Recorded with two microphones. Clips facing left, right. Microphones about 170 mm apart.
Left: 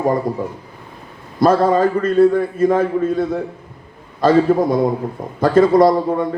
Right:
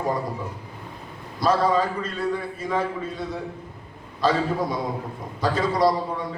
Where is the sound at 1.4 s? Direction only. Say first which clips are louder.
Left 8 dB; 50° left (ahead or behind).